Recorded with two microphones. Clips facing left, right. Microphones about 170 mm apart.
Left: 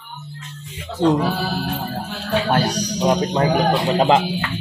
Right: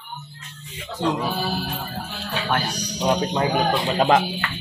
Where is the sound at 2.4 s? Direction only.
40° left (ahead or behind).